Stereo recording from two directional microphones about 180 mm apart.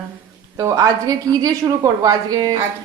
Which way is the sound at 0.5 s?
20° right (ahead or behind).